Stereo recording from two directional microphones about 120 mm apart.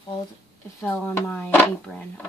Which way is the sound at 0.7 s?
15° left (ahead or behind).